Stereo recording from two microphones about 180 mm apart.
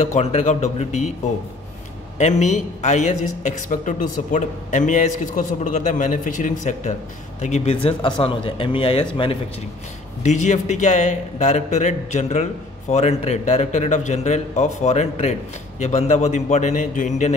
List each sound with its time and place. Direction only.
0.0 s speech: 40° left (ahead or behind)
2.1 s a man's voice: 40° left (ahead or behind)
10.2 s speech: 40° left (ahead or behind)